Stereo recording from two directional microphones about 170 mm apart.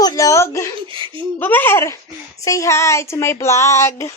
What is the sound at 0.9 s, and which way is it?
Speech, 30° right (ahead or behind).